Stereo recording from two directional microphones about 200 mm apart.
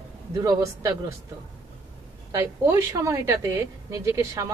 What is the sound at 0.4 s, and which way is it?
Speech, 15° right (ahead or behind).